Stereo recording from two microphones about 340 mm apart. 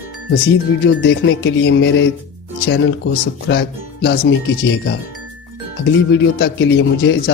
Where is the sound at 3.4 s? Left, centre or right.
Left.